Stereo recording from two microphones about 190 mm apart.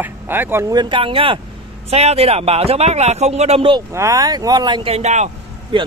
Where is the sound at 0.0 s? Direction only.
10° right (ahead or behind); by 3.8 s 30° right (ahead or behind).